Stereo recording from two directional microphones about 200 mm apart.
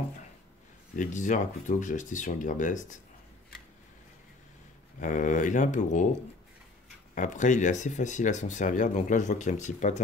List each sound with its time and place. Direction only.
0.9 s speech: 40° left (ahead or behind)
5.0 s speech: 40° left (ahead or behind)
7.2 s speech: 40° left (ahead or behind)